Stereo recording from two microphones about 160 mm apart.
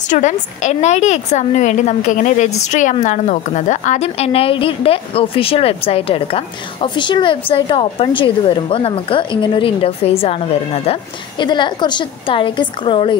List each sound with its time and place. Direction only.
0.1 s a woman's voice: 50° left (ahead or behind); by 13.2 s 30° left (ahead or behind)